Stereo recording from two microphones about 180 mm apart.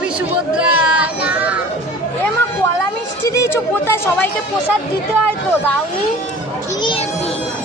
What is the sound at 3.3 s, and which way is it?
Speech, 15° left (ahead or behind).